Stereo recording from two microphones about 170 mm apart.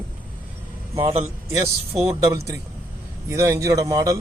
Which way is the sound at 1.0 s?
40° right (ahead or behind).